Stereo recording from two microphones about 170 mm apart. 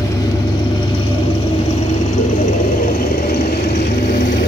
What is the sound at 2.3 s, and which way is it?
Vehicle, 55° left (ahead or behind).